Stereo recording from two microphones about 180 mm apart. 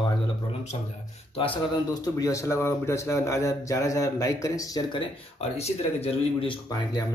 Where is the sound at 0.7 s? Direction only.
35° left (ahead or behind).